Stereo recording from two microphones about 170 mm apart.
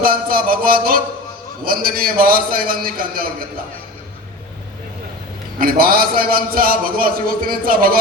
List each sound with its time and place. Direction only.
0.0 s a man's voice: 60° right (ahead or behind)
5.5 s a man's voice: 55° right (ahead or behind)